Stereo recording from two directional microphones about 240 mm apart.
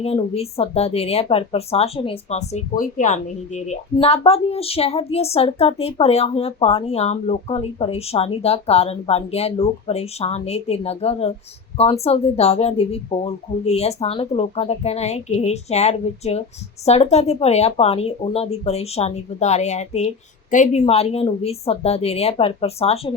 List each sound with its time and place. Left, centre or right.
0.0 s a woman's voice: left